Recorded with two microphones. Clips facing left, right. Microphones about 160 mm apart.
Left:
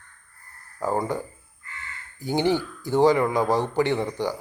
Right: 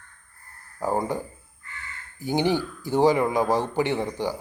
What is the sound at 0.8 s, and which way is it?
Speech, 15° right (ahead or behind).